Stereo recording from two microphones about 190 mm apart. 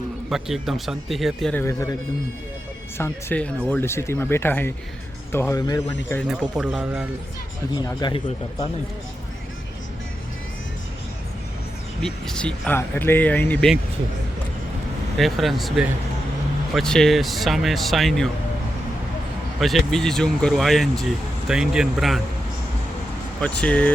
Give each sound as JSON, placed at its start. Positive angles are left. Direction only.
{"t": 0.3, "sound": "speech", "side_deg": 0}
{"t": 1.6, "sound": "speech", "side_deg": 15}
{"t": 3.0, "sound": "speech", "side_deg": 10}
{"t": 6.2, "sound": "speech", "side_deg": 0}
{"t": 7.7, "sound": "speech", "side_deg": 20}
{"t": 12.0, "sound": "speech", "side_deg": 5}
{"t": 15.2, "sound": "speech", "side_deg": 0}
{"t": 19.5, "sound": "speech", "side_deg": 0}
{"t": 23.4, "sound": "speech", "side_deg": 5}